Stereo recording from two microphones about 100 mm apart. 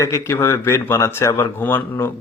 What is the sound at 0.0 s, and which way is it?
A man's voice, 30° left (ahead or behind).